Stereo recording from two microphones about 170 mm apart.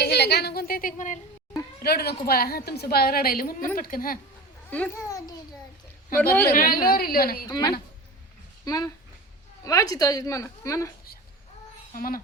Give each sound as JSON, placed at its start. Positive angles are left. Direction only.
{"t": 0.0, "sound": "a woman's voice", "side_deg": 80}
{"t": 1.8, "sound": "a woman's voice", "side_deg": 70}
{"t": 4.7, "sound": "a child's voice", "side_deg": 10}
{"t": 5.0, "sound": "a woman's voice", "side_deg": 20}
{"t": 6.5, "sound": "a woman's voice", "side_deg": 55}
{"t": 7.4, "sound": "a woman's voice", "side_deg": 25}
{"t": 11.9, "sound": "a woman's voice", "side_deg": 55}